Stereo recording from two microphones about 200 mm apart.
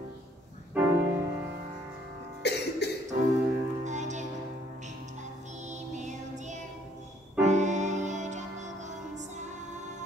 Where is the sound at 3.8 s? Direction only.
35° right (ahead or behind).